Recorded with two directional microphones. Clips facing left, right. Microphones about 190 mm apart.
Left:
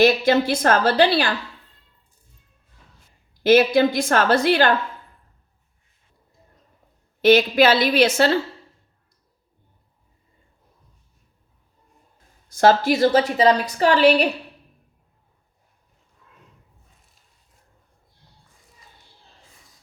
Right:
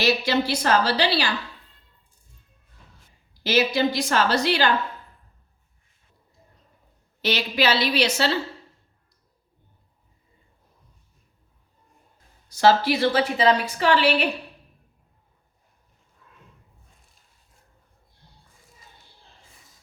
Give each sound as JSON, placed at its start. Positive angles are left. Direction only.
{"t": 0.0, "sound": "a woman's voice", "side_deg": 50}
{"t": 3.4, "sound": "a woman's voice", "side_deg": 55}
{"t": 7.2, "sound": "a woman's voice", "side_deg": 50}
{"t": 12.5, "sound": "a woman's voice", "side_deg": 50}